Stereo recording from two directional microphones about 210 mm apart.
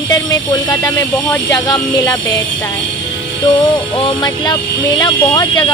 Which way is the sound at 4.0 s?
25° left (ahead or behind).